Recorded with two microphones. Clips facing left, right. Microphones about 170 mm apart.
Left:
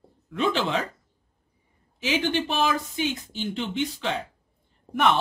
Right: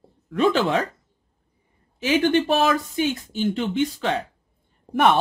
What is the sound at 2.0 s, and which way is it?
Speech, 50° right (ahead or behind).